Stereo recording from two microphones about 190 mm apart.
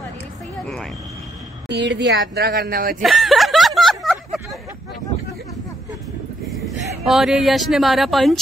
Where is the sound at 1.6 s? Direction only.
65° right (ahead or behind).